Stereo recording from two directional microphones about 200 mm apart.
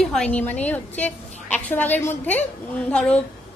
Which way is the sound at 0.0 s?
5° left (ahead or behind).